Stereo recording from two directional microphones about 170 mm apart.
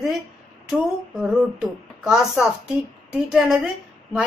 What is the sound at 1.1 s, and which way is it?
A woman's voice, 5° right (ahead or behind).